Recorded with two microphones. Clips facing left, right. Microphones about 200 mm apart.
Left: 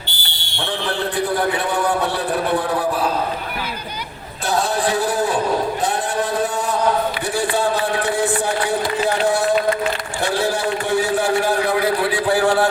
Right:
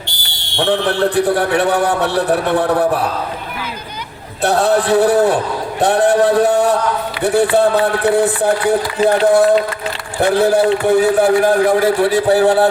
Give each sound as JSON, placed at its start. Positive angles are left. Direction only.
{"t": 0.5, "sound": "a man's voice", "side_deg": -70}
{"t": 4.4, "sound": "a man's voice", "side_deg": -65}